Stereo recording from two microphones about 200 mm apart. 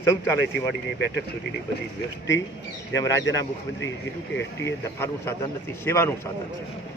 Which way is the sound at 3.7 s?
70° left (ahead or behind).